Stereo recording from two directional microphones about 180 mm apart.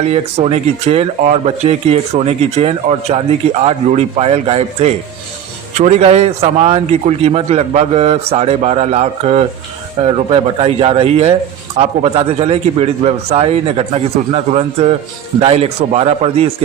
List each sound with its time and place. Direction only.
0.0 s speech: 35° right (ahead or behind)